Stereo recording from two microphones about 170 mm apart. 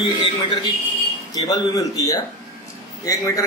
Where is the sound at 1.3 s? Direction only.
20° left (ahead or behind).